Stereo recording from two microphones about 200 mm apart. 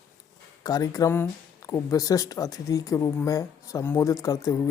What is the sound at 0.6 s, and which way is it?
Speech, 15° left (ahead or behind).